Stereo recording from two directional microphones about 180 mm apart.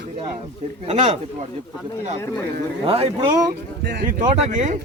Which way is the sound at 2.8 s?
30° right (ahead or behind).